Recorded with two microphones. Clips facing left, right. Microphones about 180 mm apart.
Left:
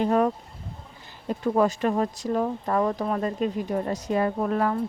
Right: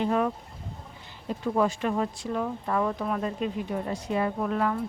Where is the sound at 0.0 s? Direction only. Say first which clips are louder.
Left 4 dB; 40° left (ahead or behind).